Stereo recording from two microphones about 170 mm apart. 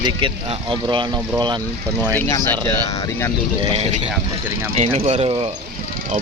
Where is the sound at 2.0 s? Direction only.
10° left (ahead or behind).